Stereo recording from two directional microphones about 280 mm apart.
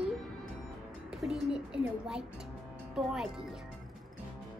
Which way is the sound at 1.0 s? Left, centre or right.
Centre.